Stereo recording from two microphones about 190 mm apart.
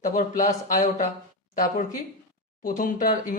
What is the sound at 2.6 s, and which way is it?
Speech, 45° left (ahead or behind).